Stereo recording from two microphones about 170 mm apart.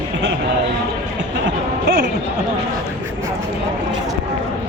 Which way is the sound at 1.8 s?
60° right (ahead or behind).